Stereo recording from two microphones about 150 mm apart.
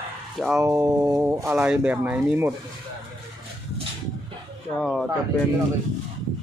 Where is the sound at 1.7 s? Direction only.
10° right (ahead or behind).